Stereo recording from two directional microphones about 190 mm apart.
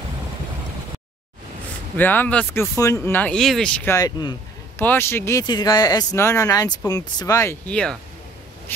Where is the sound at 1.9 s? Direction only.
10° left (ahead or behind).